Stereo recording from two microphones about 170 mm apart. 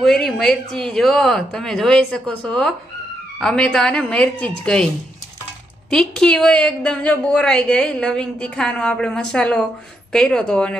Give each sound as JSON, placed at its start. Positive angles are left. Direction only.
{"t": 0.0, "sound": "a woman's voice", "side_deg": 0}
{"t": 5.9, "sound": "a woman's voice", "side_deg": 5}